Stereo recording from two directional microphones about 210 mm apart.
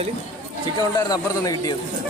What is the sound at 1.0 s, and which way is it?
Speech, 15° left (ahead or behind).